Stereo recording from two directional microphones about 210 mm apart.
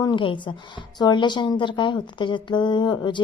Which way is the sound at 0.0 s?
25° left (ahead or behind).